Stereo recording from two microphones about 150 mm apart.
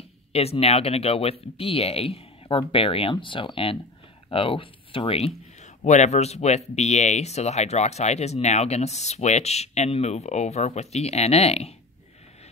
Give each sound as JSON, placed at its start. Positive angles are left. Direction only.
{"t": 0.3, "sound": "speech", "side_deg": 45}